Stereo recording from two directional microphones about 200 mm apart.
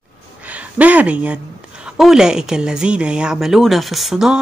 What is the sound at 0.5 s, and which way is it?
Speech, 5° right (ahead or behind).